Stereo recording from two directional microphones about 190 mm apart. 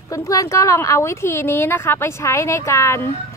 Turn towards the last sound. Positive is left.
turn(degrees=15)  # may be behind; listen again after turning